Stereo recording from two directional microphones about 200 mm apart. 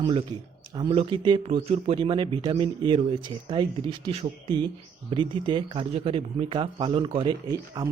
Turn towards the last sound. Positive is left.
turn(degrees=-20)  # may be behind; listen again after turning